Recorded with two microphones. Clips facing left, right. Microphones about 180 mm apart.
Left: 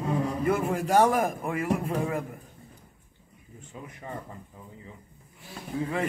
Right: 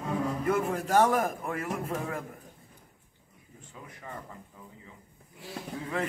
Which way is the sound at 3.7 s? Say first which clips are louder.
Left 5 dB; 20° left (ahead or behind).